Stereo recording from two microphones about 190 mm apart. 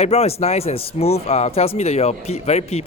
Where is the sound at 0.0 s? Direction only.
35° left (ahead or behind).